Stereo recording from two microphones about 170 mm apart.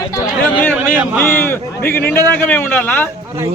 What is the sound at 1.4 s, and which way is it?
A man's voice, 15° left (ahead or behind).